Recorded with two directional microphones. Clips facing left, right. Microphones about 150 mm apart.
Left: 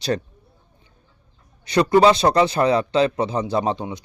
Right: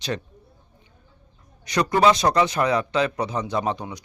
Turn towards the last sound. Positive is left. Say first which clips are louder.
# left 3 dB
turn(degrees=25)  # may be behind; listen again after turning